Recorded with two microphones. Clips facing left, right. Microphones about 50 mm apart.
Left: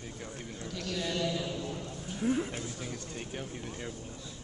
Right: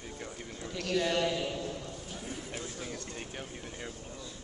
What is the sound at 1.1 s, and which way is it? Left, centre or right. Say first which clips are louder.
Speech: right 2 dB; right.